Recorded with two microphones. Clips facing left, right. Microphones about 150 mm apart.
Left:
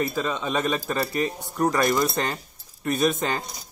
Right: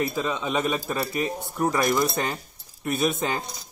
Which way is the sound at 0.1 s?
10° right (ahead or behind).